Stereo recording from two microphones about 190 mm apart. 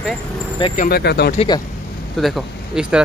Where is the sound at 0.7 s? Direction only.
55° left (ahead or behind).